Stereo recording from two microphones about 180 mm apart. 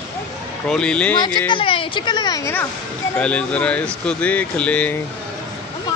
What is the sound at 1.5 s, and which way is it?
Speech, 30° left (ahead or behind).